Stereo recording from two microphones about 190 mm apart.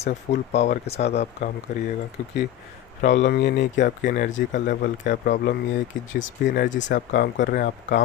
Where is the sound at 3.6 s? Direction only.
40° left (ahead or behind).